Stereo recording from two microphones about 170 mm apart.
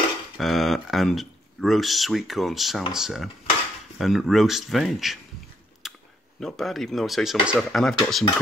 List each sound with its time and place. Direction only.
0.4 s speech: centre (ahead or behind)
5.8 s a sound: centre (ahead or behind)
6.4 s speech: centre (ahead or behind)